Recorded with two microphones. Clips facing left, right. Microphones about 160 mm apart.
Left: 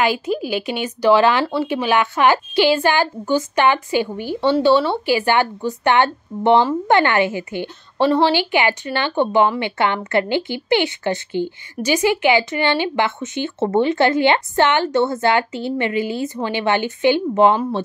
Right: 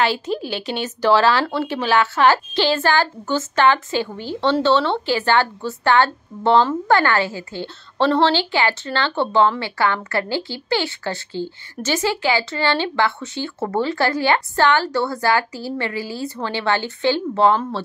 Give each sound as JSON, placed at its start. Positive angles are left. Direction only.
{"t": 0.0, "sound": "a woman's voice", "side_deg": 10}